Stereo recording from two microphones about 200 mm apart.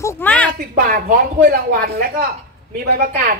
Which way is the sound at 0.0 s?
10° left (ahead or behind).